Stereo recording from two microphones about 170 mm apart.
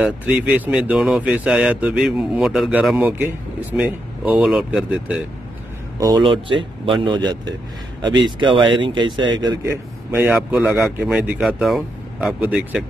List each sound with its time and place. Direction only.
0.0 s speech: 5° right (ahead or behind)
5.9 s a man's voice: 25° right (ahead or behind); by 12.8 s 10° right (ahead or behind)